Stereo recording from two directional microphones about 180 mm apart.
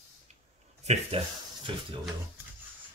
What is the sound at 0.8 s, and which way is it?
Speech, 40° right (ahead or behind).